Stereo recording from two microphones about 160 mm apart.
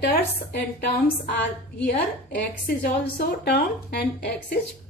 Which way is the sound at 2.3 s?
90° left.